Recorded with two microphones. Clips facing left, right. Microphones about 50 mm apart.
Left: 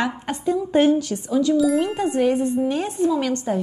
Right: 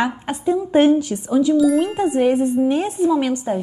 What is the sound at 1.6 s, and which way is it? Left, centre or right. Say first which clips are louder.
A woman's voice: right 3 dB; centre.